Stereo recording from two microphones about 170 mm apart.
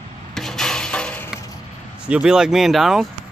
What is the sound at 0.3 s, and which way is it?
Rub, 5° left (ahead or behind).